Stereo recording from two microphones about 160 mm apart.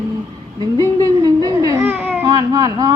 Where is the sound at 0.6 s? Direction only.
20° right (ahead or behind).